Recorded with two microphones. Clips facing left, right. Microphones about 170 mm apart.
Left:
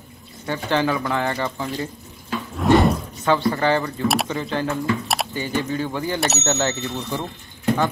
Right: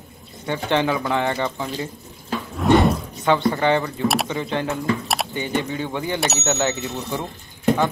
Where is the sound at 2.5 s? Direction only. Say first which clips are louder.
Even; centre (ahead or behind).